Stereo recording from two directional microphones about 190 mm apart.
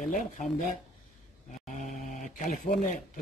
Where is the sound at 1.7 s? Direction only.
40° left (ahead or behind).